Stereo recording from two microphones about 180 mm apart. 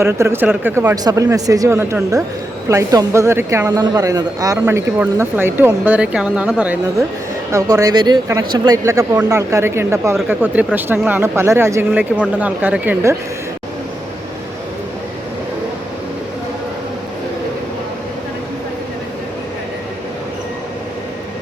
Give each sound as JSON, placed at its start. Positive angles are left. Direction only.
{"t": 0.0, "sound": "speech", "side_deg": -15}
{"t": 7.5, "sound": "speech", "side_deg": -20}